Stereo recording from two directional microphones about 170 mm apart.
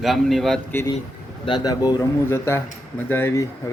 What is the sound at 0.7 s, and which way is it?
Speech, 15° left (ahead or behind).